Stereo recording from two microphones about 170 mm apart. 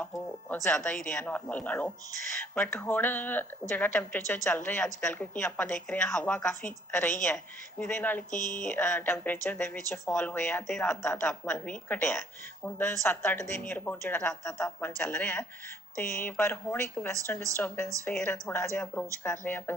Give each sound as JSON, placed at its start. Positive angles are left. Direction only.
{"t": 0.4, "sound": "a woman's voice", "side_deg": 5}
{"t": 8.3, "sound": "speech", "side_deg": 50}
{"t": 8.7, "sound": "a woman's voice", "side_deg": 15}